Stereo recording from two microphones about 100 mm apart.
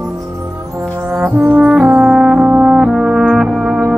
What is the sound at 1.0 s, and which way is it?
Brass instrument, 20° right (ahead or behind).